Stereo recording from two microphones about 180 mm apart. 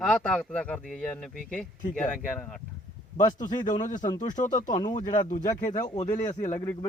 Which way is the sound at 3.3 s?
45° left (ahead or behind).